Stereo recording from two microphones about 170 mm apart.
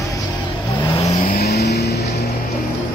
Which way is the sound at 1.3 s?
65° left (ahead or behind).